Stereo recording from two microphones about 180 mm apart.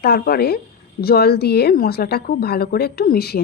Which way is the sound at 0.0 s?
60° left (ahead or behind).